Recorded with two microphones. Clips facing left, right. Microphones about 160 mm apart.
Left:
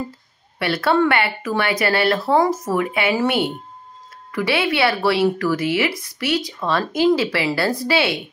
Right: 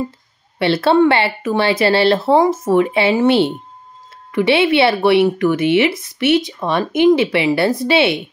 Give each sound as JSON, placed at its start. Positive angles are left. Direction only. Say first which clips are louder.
{"t": 0.6, "sound": "speech", "louder": "right 5 dB", "side_deg": -25}